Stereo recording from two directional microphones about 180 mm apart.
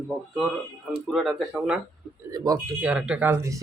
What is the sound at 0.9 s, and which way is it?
Speech, centre (ahead or behind).